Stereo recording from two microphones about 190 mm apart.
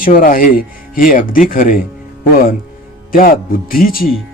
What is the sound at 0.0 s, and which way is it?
Speech, 45° left (ahead or behind).